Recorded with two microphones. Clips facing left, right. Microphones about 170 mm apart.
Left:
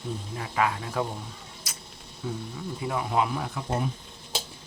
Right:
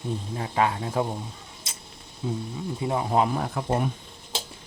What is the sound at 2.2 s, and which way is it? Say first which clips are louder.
Speech: right 4 dB; 20° right (ahead or behind).